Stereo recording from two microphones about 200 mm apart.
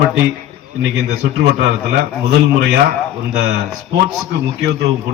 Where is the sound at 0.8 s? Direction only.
60° right (ahead or behind).